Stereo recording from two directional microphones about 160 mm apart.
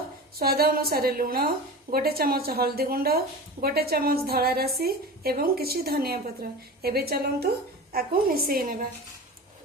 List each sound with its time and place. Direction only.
0.3 s a woman's voice: 75° right (ahead or behind)